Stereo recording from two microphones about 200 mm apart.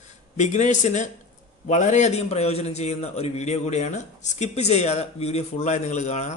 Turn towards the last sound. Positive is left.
turn(degrees=35)  # may be behind; listen again after turning